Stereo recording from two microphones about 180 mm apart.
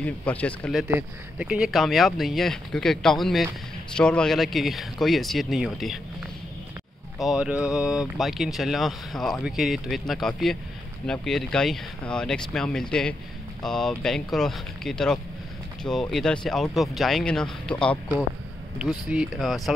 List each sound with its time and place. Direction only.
0.0 s speech: 10° left (ahead or behind)
0.8 s speech: 10° right (ahead or behind)
7.2 s speech: centre (ahead or behind)
19.0 s speech: 5° right (ahead or behind)